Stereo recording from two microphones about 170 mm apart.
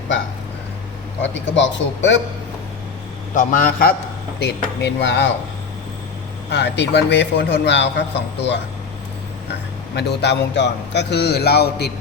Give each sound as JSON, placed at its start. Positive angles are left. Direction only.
{"t": 1.2, "sound": "a man's voice", "side_deg": 90}
{"t": 3.3, "sound": "a man's voice", "side_deg": 50}
{"t": 4.4, "sound": "a man's voice", "side_deg": 80}
{"t": 6.5, "sound": "a man's voice", "side_deg": 90}
{"t": 9.5, "sound": "a man's voice", "side_deg": 85}